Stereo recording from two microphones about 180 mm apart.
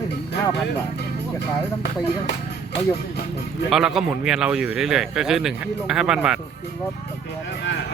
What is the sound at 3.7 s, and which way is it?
A man's voice, centre (ahead or behind).